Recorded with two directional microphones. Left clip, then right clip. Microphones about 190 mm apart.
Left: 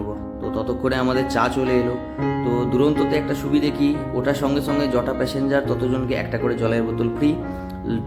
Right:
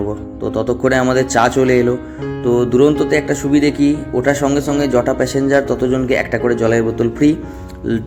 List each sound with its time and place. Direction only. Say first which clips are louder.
0.4 s speech: right 7 dB; 20° right (ahead or behind)